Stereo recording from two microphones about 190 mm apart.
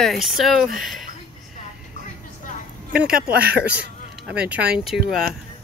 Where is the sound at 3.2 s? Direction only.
55° right (ahead or behind).